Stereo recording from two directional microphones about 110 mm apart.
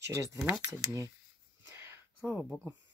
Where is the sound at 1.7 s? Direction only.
20° right (ahead or behind).